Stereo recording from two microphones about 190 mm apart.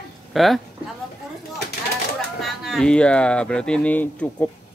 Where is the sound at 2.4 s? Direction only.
Centre (ahead or behind).